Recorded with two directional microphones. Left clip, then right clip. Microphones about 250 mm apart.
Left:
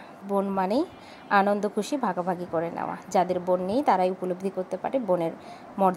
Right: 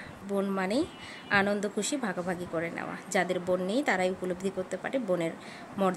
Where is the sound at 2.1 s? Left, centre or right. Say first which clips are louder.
Left 5 dB; centre.